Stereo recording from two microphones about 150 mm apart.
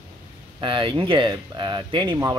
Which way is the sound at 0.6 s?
35° right (ahead or behind).